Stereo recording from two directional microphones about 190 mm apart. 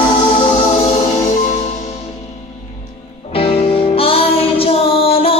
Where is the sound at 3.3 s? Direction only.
30° left (ahead or behind).